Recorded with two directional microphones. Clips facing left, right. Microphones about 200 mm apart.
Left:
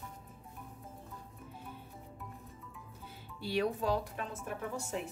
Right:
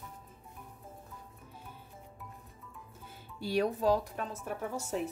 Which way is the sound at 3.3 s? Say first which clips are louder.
Right 2 dB; 40° right (ahead or behind).